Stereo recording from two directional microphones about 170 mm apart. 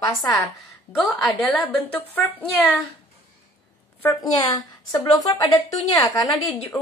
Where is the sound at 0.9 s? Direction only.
Centre (ahead or behind).